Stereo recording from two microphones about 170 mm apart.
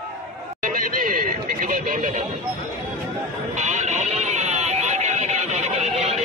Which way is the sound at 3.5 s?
45° right (ahead or behind).